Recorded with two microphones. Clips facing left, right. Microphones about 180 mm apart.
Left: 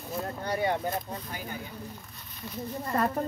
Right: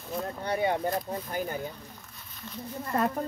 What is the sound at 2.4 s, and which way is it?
Speech, 10° left (ahead or behind).